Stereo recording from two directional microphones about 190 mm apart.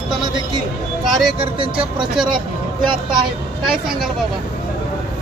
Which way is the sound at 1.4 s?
25° right (ahead or behind).